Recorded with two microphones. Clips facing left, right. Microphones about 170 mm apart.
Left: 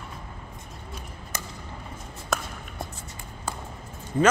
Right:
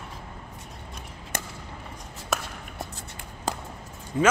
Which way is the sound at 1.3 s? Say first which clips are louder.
Right 3 dB; 55° right (ahead or behind).